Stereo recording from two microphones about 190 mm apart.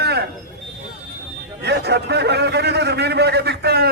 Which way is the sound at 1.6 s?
60° right (ahead or behind).